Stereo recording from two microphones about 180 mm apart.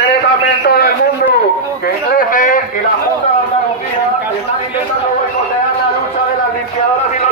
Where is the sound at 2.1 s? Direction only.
50° left (ahead or behind).